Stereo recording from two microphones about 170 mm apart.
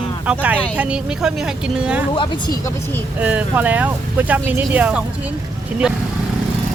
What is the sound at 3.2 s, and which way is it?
Speech, 10° right (ahead or behind).